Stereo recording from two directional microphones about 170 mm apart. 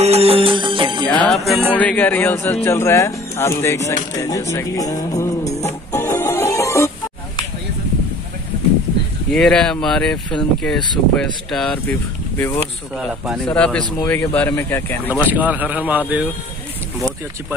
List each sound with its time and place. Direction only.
0.0 s music: 35° right (ahead or behind)
1.0 s music: 5° left (ahead or behind)
1.7 s speech: 10° left (ahead or behind)
3.9 s music: 20° left (ahead or behind)
9.3 s speech: 5° left (ahead or behind)
12.9 s speech: 5° right (ahead or behind)
13.5 s speech: 5° left (ahead or behind)
15.0 s speech: 10° right (ahead or behind)